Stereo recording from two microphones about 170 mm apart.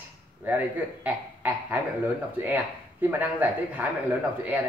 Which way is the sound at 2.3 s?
10° right (ahead or behind).